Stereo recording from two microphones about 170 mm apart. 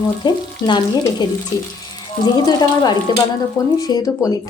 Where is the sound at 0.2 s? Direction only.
25° left (ahead or behind).